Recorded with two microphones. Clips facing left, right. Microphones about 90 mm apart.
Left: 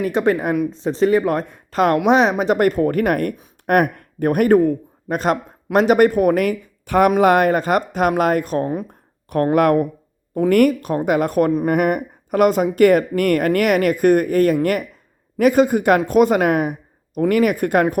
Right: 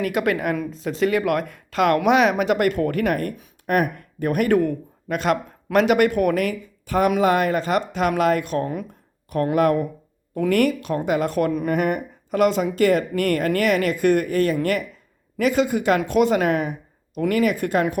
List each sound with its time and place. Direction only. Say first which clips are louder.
0.0 s speech: left 4 dB; 30° left (ahead or behind)
6.4 s speech: left 4 dB; 55° left (ahead or behind)
8.6 s speech: left 4 dB; 30° left (ahead or behind)
9.3 s speech: left 4 dB; 50° left (ahead or behind)
11.7 s speech: left 4 dB; 55° left (ahead or behind)